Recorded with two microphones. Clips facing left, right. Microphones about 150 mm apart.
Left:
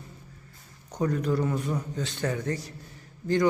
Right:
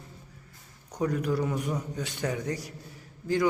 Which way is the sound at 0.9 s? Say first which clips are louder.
Left 1 dB; 10° right (ahead or behind).